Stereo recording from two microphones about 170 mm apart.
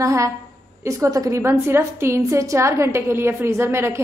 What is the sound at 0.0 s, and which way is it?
A woman's voice, 20° right (ahead or behind).